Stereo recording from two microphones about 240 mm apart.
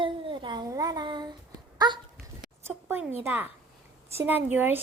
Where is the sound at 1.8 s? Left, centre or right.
Centre.